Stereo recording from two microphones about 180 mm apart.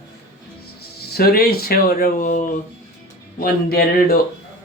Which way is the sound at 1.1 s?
60° left (ahead or behind).